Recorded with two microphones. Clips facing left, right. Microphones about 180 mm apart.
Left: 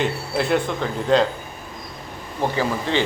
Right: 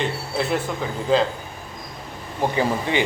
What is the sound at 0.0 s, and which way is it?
Speech, centre (ahead or behind).